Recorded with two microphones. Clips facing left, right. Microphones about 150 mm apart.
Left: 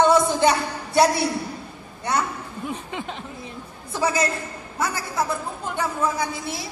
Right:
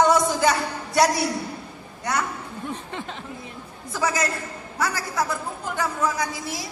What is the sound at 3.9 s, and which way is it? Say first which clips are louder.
Speech: left 2 dB; 25° left (ahead or behind).